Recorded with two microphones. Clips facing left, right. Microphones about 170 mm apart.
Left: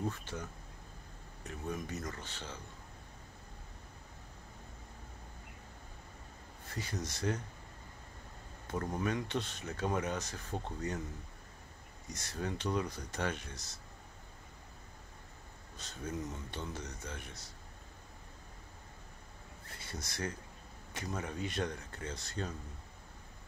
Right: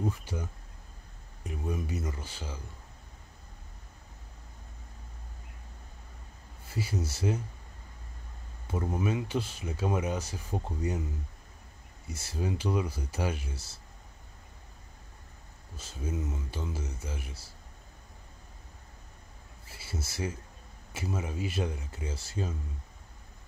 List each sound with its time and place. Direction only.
0.0 s speech: 10° right (ahead or behind)
6.7 s speech: 10° right (ahead or behind)
8.6 s speech: 10° right (ahead or behind)
12.1 s speech: 10° right (ahead or behind)
15.7 s speech: 5° right (ahead or behind)
19.6 s speech: 5° right (ahead or behind)